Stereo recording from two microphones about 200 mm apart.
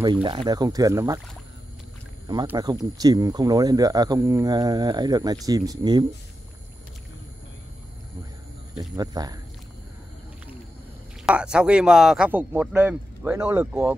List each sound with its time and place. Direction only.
0.0 s speech: 20° right (ahead or behind)
2.5 s speech: 20° right (ahead or behind)
8.7 s speech: 20° right (ahead or behind)
11.2 s speech: 5° right (ahead or behind)